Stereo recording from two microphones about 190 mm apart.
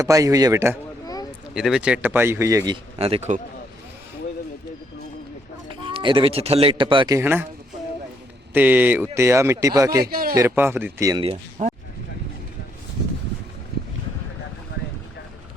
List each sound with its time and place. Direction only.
0.0 s a man's voice: 15° right (ahead or behind)
1.0 s a sound: 20° left (ahead or behind)
1.5 s a man's voice: 5° right (ahead or behind)
3.0 s speech: 35° right (ahead or behind)
5.9 s a man's voice: 25° right (ahead or behind)
7.2 s a man's voice: 10° right (ahead or behind)
8.5 s a man's voice: 10° right (ahead or behind)
10.0 s a man's voice: 50° right (ahead or behind)
10.3 s a man's voice: 15° right (ahead or behind)
13.7 s boat: 55° right (ahead or behind)